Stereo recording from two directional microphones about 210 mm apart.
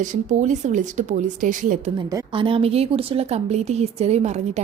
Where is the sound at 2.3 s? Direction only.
25° right (ahead or behind).